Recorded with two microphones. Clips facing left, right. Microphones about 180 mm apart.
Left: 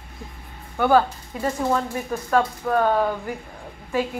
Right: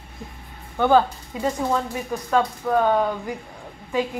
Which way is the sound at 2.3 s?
Centre (ahead or behind).